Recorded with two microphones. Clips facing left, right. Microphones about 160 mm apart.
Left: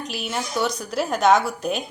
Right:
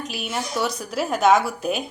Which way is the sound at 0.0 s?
Centre (ahead or behind).